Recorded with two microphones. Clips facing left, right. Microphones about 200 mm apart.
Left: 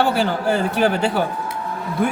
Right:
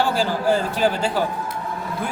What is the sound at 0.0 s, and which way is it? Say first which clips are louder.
A man's voice: left 2 dB; 65° left (ahead or behind).